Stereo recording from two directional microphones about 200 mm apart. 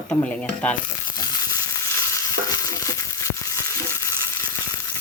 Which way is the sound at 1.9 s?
15° left (ahead or behind).